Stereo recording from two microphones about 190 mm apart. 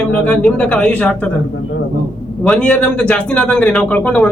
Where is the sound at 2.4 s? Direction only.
5° left (ahead or behind).